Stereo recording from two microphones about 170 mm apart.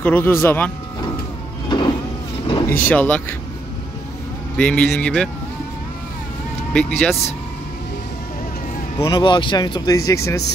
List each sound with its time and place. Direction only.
0.0 s speech: 10° left (ahead or behind)
1.7 s vehicle: 25° left (ahead or behind)
2.8 s speech: 10° left (ahead or behind)
4.6 s speech: 5° left (ahead or behind)
6.7 s speech: 5° left (ahead or behind)
8.9 s speech: 25° left (ahead or behind)